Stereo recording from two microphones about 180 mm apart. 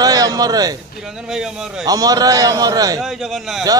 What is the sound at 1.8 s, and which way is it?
A man's voice, 20° right (ahead or behind).